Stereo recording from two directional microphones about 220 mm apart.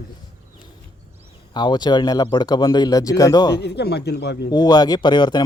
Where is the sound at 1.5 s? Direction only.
20° left (ahead or behind).